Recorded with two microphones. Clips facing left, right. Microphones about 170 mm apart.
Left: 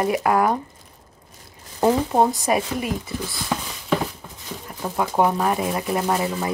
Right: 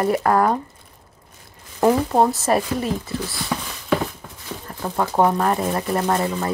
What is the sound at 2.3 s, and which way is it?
Speech, 15° left (ahead or behind).